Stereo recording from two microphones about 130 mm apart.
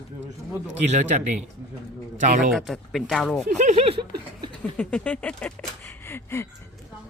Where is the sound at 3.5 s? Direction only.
65° right (ahead or behind); by 4.1 s 45° right (ahead or behind).